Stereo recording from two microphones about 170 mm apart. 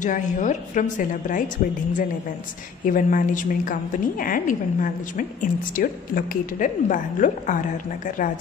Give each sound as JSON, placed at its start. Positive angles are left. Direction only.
{"t": 0.0, "sound": "a woman's voice", "side_deg": 45}
{"t": 2.8, "sound": "a woman's voice", "side_deg": 50}